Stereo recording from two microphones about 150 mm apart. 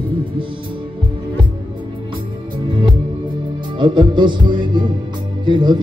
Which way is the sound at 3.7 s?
30° right (ahead or behind).